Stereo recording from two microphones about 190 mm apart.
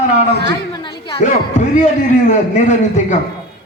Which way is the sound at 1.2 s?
40° left (ahead or behind).